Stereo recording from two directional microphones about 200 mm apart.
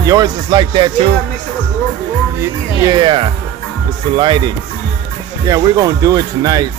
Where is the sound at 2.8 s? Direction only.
25° right (ahead or behind).